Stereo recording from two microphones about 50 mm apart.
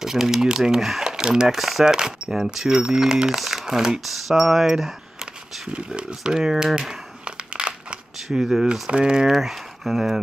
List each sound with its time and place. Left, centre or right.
0.0 s speech: centre
5.7 s a sound: right
8.3 s speech: centre
9.3 s speech: centre